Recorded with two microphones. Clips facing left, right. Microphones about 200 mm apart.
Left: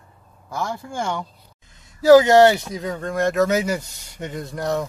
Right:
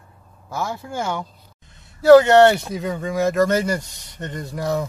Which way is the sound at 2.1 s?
5° left (ahead or behind).